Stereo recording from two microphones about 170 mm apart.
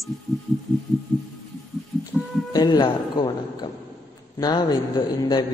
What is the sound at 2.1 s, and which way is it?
Music, centre (ahead or behind).